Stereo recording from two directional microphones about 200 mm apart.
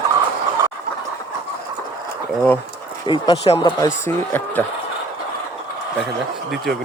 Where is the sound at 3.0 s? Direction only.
25° left (ahead or behind).